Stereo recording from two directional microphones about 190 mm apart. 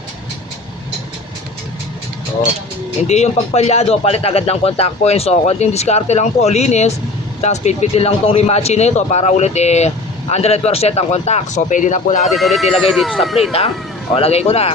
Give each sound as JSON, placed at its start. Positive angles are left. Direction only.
{"t": 3.1, "sound": "speech", "side_deg": 35}
{"t": 12.3, "sound": "speech", "side_deg": 0}
{"t": 14.2, "sound": "speech", "side_deg": 30}